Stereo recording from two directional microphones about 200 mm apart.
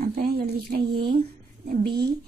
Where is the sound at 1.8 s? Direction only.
55° right (ahead or behind).